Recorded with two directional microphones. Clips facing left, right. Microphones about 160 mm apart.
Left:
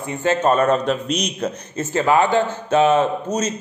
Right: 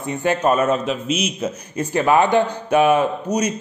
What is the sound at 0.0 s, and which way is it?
A man's voice, 15° right (ahead or behind).